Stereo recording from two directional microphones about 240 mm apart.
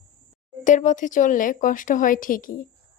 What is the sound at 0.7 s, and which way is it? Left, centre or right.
Speech, left.